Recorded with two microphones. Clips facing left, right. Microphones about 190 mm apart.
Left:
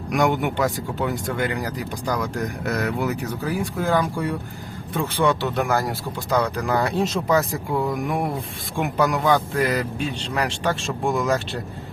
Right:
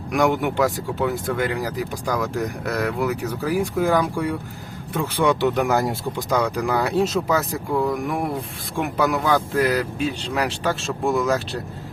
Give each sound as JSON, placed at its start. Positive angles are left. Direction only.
{"t": 0.1, "sound": "speech", "side_deg": 0}
{"t": 5.2, "sound": "speech", "side_deg": -15}